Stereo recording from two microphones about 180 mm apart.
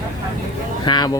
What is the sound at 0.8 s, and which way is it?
Speech, 25° left (ahead or behind).